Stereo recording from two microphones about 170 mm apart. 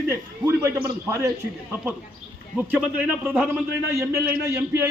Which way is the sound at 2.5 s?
10° right (ahead or behind).